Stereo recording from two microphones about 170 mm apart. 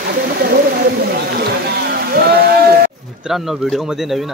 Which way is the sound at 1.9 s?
65° right (ahead or behind).